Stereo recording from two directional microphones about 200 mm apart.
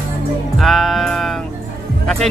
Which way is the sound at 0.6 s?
Centre (ahead or behind).